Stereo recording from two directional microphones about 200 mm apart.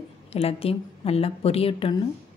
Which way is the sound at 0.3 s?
30° left (ahead or behind).